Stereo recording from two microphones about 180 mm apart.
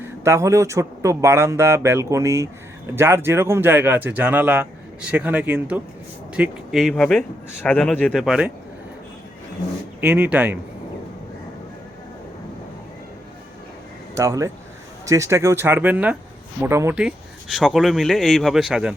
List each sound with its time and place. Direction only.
0.0 s speech: 15° right (ahead or behind); by 8.2 s 5° left (ahead or behind)
8.2 s speech: 5° right (ahead or behind)
10.0 s speech: 5° right (ahead or behind)
14.2 s speech: 20° right (ahead or behind)